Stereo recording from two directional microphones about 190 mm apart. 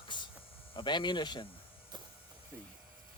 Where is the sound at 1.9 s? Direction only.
25° right (ahead or behind).